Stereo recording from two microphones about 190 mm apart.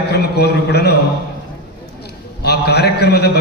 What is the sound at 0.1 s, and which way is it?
Speech, 60° left (ahead or behind).